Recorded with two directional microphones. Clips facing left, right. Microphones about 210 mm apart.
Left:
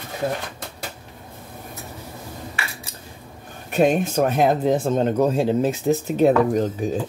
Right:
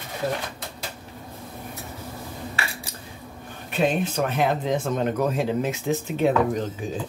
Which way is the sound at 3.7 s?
45° left (ahead or behind).